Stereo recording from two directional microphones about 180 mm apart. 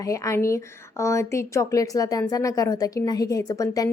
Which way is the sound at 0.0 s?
15° left (ahead or behind).